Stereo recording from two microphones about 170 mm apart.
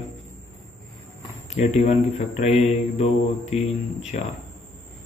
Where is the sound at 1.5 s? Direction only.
40° left (ahead or behind).